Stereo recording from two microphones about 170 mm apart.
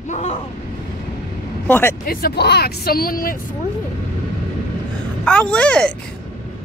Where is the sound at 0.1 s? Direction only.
40° left (ahead or behind).